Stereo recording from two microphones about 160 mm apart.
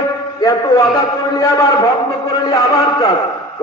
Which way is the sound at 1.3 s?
20° left (ahead or behind).